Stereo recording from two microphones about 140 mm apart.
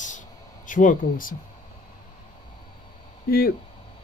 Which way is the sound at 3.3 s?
90° left.